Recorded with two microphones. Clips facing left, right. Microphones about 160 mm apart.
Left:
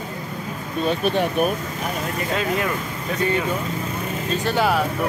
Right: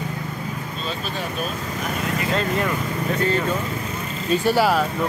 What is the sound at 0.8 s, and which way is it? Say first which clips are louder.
Speech: left 9 dB; 60° left (ahead or behind).